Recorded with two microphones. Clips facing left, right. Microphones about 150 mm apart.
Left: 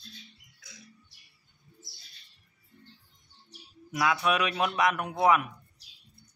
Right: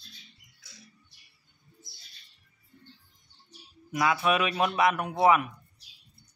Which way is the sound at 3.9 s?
Centre (ahead or behind).